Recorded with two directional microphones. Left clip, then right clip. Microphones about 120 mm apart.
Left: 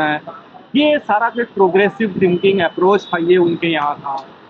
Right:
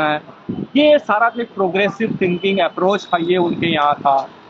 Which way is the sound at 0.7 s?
20° right (ahead or behind).